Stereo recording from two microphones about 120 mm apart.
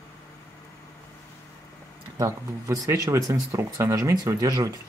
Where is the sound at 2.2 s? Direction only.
25° right (ahead or behind).